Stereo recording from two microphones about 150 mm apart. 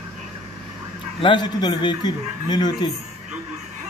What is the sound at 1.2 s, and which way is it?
Speech, 30° left (ahead or behind).